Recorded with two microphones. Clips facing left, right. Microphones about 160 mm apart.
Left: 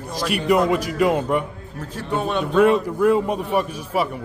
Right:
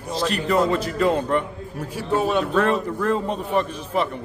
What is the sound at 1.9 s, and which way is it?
Speech, centre (ahead or behind).